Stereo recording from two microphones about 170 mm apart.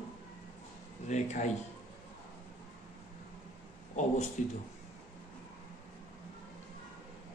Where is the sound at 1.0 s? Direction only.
45° left (ahead or behind).